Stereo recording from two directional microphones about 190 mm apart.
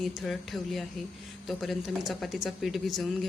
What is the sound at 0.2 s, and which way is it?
A woman's voice, centre (ahead or behind).